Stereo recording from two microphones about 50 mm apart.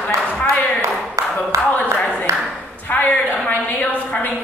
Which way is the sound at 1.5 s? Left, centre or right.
Right.